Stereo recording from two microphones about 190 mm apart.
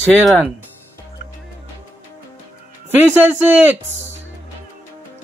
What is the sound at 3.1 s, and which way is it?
Speech, 10° right (ahead or behind).